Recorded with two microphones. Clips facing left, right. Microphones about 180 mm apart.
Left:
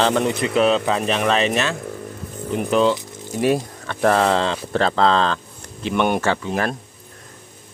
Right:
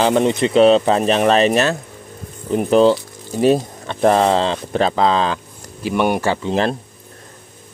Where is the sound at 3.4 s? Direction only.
25° right (ahead or behind).